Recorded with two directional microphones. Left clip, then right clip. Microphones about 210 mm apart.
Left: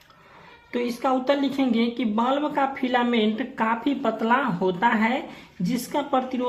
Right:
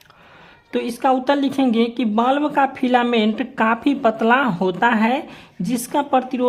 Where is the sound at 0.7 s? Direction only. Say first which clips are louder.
Right 6 dB; 50° right (ahead or behind).